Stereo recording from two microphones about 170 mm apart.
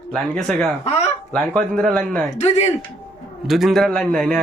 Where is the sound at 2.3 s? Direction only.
40° left (ahead or behind).